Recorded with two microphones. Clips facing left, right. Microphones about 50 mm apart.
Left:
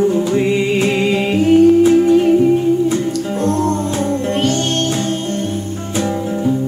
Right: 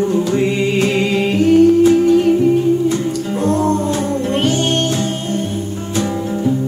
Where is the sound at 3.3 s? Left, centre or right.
Centre.